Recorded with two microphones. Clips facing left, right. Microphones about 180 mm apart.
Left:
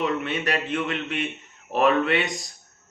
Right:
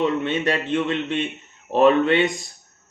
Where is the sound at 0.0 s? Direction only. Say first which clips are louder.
Right 4 dB; 30° right (ahead or behind).